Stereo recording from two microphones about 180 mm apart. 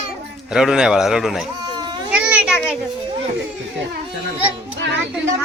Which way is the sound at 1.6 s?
25° right (ahead or behind).